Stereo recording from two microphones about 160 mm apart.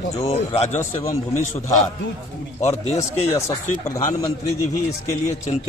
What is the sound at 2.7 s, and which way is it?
Speech, 40° left (ahead or behind).